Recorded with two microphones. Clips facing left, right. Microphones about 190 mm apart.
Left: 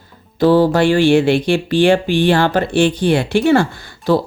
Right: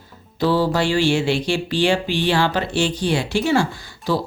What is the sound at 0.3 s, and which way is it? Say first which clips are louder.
Speech: left 7 dB; 50° left (ahead or behind).